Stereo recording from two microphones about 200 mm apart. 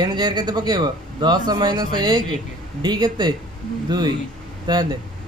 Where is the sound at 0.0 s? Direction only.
20° right (ahead or behind).